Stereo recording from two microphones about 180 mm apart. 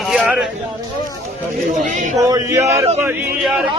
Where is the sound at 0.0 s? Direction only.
5° right (ahead or behind).